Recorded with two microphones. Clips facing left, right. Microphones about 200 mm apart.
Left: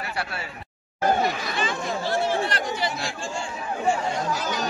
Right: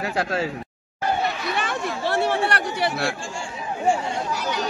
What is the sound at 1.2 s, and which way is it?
Chatter, 65° right (ahead or behind).